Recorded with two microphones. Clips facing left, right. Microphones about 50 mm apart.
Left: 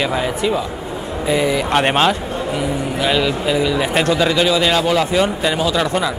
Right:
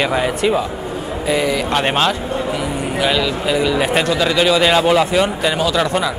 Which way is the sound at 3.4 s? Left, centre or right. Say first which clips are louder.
Right 1 dB; centre.